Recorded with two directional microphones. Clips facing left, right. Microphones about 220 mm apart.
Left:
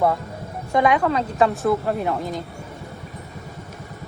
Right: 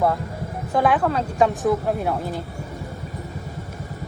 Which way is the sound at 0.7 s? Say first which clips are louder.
Left 1 dB; 5° right (ahead or behind).